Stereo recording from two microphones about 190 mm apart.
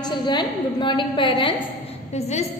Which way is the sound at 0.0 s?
25° left (ahead or behind).